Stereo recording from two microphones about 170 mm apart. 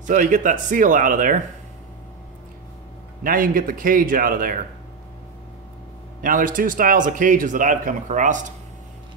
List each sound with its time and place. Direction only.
0.0 s a man's voice: 50° right (ahead or behind)
3.3 s a man's voice: 55° right (ahead or behind)
6.2 s a man's voice: 50° right (ahead or behind)